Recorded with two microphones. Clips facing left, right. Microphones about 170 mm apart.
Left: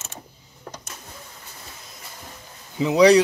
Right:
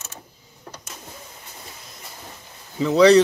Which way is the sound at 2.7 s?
15° left (ahead or behind).